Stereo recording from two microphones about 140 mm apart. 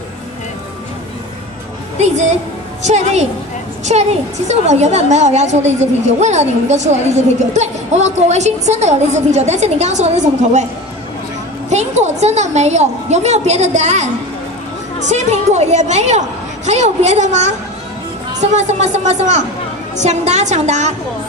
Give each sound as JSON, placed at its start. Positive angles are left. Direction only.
{"t": 2.0, "sound": "a woman's voice", "side_deg": -55}
{"t": 11.7, "sound": "a woman's voice", "side_deg": -55}